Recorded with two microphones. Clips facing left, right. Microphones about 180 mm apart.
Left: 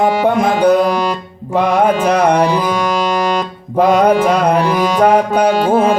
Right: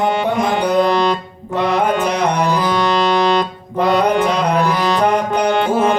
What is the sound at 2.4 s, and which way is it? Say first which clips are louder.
Music: left 1 dB; 10° left (ahead or behind).